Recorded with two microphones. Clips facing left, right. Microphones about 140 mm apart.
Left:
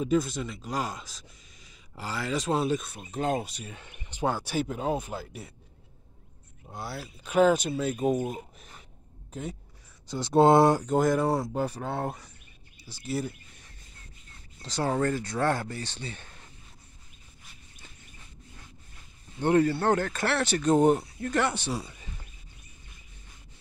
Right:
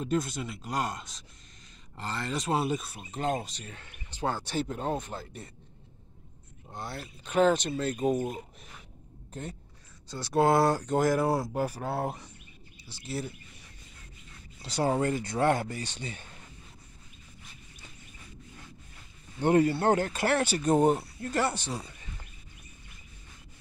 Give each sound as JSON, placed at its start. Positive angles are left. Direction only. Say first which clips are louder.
{"t": 0.0, "sound": "speech", "louder": "left 4 dB", "side_deg": 0}
{"t": 6.7, "sound": "speech", "louder": "left 2 dB", "side_deg": 5}
{"t": 10.0, "sound": "speech", "louder": "left 5 dB", "side_deg": 20}
{"t": 10.9, "sound": "speech", "louder": "left 1 dB", "side_deg": 0}
{"t": 14.6, "sound": "speech", "louder": "even", "side_deg": -10}
{"t": 19.4, "sound": "speech", "louder": "even", "side_deg": -15}